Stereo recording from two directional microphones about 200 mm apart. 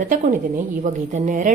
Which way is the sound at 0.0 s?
40° right (ahead or behind).